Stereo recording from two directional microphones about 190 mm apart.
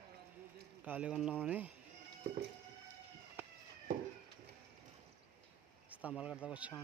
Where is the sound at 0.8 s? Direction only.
5° right (ahead or behind).